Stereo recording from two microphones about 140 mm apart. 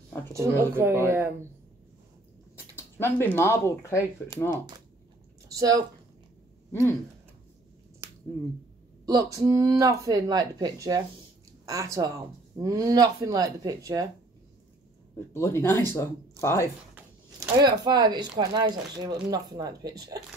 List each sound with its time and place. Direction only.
0.3 s speech: 20° right (ahead or behind)
2.7 s speech: 15° left (ahead or behind)
5.6 s speech: 25° right (ahead or behind)
9.0 s speech: 25° right (ahead or behind)
15.3 s speech: 20° left (ahead or behind)
17.4 s speech: 30° right (ahead or behind)